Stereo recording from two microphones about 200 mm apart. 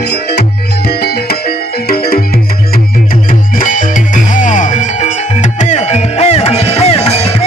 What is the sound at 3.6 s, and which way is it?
Music, 40° left (ahead or behind).